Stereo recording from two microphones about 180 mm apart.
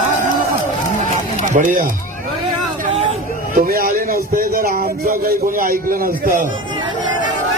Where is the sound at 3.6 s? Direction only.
55° right (ahead or behind).